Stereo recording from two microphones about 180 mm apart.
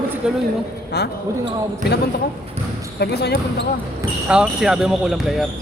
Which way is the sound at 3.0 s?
65° left (ahead or behind).